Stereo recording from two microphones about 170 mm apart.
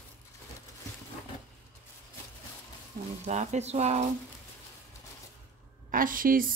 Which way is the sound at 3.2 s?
40° right (ahead or behind).